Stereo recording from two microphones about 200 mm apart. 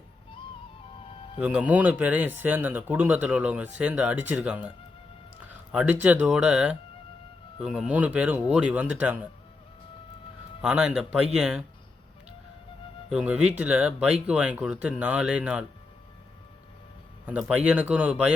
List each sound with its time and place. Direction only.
1.4 s speech: 5° right (ahead or behind)
10.6 s speech: 5° right (ahead or behind)
13.1 s speech: 5° right (ahead or behind)
17.2 s speech: 5° right (ahead or behind)